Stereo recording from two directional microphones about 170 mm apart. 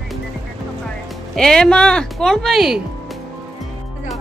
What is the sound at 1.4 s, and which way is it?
Speech, 5° left (ahead or behind).